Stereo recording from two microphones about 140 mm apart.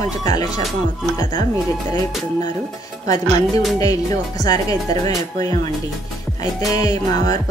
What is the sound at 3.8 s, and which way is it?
Speech, 25° left (ahead or behind).